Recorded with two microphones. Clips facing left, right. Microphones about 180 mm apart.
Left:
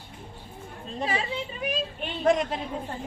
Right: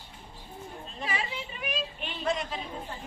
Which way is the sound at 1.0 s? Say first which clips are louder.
Left 5 dB; 30° left (ahead or behind).